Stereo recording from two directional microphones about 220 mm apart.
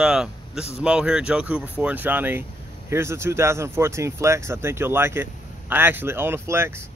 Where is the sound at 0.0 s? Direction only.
Centre (ahead or behind).